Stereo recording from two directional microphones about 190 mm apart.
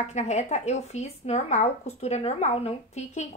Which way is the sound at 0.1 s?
40° left (ahead or behind).